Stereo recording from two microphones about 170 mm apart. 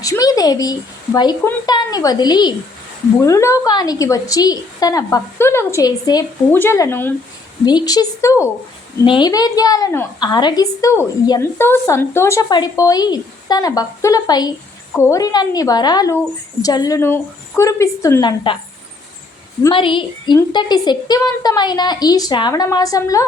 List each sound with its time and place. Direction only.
0.0 s a woman's voice: 20° left (ahead or behind)
19.7 s a woman's voice: 30° left (ahead or behind)